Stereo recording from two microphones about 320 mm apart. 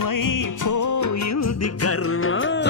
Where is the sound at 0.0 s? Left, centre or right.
Left.